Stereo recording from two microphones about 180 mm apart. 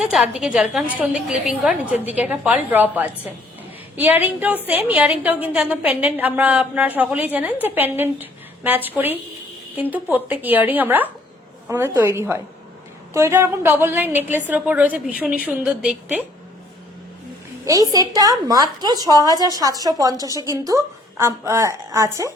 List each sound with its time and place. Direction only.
0.0 s a woman's voice: 5° right (ahead or behind)
17.7 s a woman's voice: 20° right (ahead or behind)